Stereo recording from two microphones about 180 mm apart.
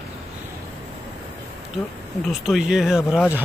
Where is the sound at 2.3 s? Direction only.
Centre (ahead or behind).